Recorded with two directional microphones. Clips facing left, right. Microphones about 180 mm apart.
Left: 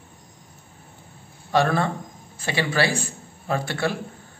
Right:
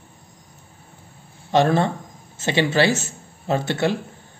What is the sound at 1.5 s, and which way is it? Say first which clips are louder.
A man's voice: right 3 dB; 20° right (ahead or behind).